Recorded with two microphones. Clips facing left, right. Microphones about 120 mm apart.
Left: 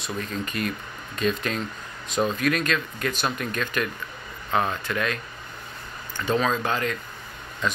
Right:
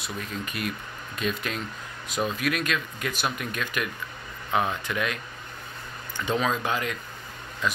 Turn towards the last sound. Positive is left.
turn(degrees=-5)  # may be behind; listen again after turning